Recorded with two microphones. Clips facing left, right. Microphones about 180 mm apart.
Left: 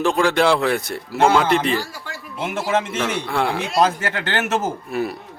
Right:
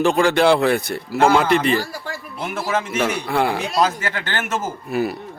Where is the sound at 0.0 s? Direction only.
Centre (ahead or behind).